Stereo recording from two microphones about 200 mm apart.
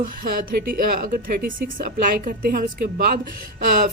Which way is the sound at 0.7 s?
45° right (ahead or behind).